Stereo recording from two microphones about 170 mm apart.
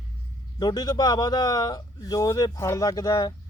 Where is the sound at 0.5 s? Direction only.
25° left (ahead or behind).